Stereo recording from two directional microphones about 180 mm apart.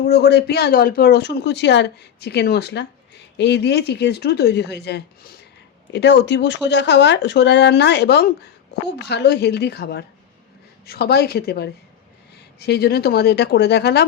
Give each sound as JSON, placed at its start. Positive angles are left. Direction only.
{"t": 0.0, "sound": "speech", "side_deg": 70}